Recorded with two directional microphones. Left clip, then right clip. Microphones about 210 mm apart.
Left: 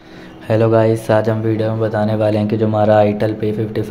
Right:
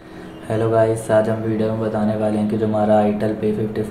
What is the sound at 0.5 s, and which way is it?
Speech, 40° left (ahead or behind).